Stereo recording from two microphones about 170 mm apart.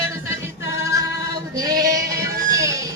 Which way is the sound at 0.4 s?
15° right (ahead or behind).